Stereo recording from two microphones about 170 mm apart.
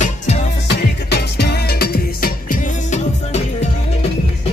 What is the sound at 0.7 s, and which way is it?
Music, 80° left.